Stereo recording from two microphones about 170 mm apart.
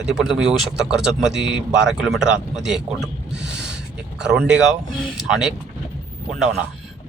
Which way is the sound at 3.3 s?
90° right.